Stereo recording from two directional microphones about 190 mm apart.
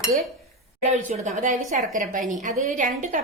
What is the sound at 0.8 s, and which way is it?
A woman's voice, 40° right (ahead or behind).